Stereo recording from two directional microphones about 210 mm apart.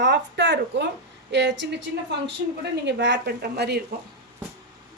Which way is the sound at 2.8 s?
55° right (ahead or behind).